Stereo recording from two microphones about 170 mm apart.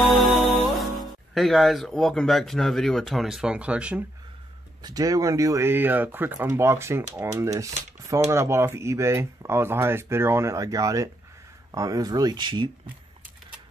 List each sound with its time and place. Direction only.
0.0 s speech: centre (ahead or behind)
4.8 s speech: 20° right (ahead or behind)